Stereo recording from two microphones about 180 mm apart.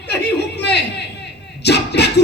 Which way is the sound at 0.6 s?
70° left (ahead or behind).